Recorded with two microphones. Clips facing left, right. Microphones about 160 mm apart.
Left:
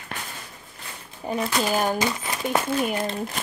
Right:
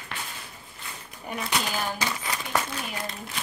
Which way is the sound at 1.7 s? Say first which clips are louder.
Left 8 dB; 45° left (ahead or behind).